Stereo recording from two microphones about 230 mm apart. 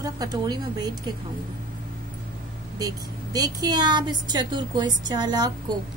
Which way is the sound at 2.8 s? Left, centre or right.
Centre.